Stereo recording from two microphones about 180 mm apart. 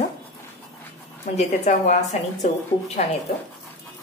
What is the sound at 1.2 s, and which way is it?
Speech, 40° left (ahead or behind).